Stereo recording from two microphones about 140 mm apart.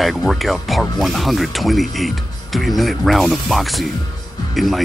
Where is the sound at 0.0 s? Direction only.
Centre (ahead or behind).